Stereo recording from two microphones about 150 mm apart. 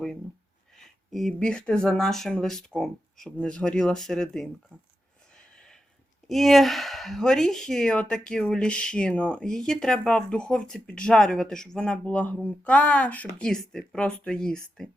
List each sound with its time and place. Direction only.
0.8 s speech: centre (ahead or behind)
5.3 s a sound: 5° left (ahead or behind)
6.2 s speech: centre (ahead or behind)